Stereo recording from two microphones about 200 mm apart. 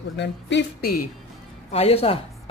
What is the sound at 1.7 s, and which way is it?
Speech, 30° left (ahead or behind).